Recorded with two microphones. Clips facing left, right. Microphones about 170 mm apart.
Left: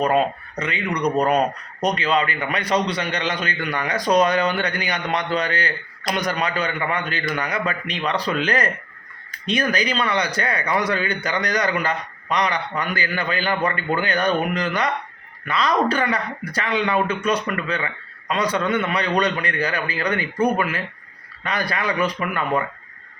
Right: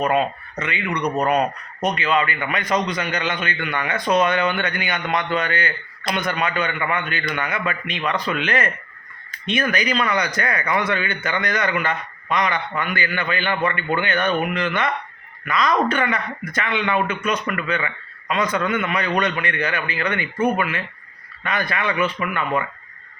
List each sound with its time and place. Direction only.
0.6 s a man's voice: 35° left (ahead or behind)